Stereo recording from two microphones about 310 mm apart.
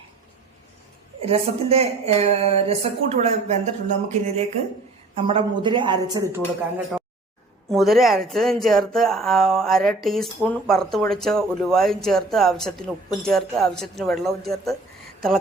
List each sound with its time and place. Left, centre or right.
1.2 s a woman's voice: centre